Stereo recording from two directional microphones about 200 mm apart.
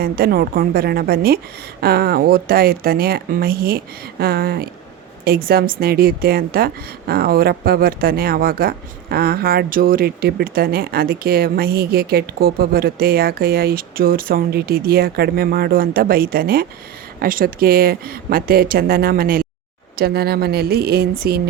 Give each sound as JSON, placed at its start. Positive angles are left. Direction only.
{"t": 0.0, "sound": "speech", "side_deg": -50}